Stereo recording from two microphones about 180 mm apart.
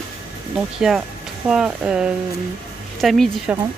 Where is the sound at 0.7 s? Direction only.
Centre (ahead or behind).